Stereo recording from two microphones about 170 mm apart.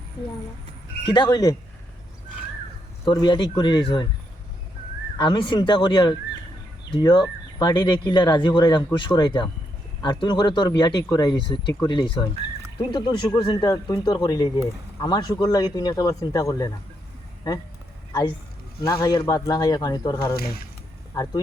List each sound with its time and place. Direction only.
1.0 s speech: 25° left (ahead or behind)
3.0 s speech: 25° left (ahead or behind)
5.1 s speech: 25° left (ahead or behind)
18.9 s speech: 25° left (ahead or behind)